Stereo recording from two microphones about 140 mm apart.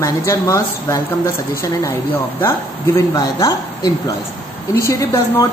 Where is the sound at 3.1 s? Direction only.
30° left (ahead or behind).